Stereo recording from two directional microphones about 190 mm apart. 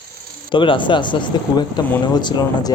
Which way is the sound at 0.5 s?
25° left (ahead or behind).